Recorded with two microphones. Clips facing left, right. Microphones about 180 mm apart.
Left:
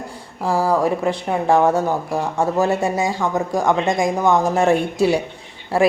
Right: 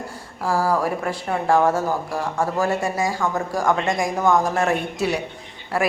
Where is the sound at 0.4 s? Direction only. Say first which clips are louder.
Left 3 dB; 25° left (ahead or behind).